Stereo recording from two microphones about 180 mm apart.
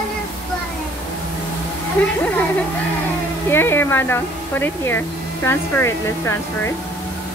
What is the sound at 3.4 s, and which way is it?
Speech, 15° left (ahead or behind).